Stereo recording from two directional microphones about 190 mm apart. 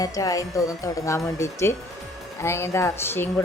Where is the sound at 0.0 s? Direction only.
20° left (ahead or behind).